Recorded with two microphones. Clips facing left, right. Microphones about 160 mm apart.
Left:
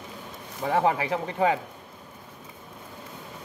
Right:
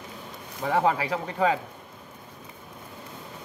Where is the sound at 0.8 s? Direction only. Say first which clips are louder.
Even; 20° left (ahead or behind).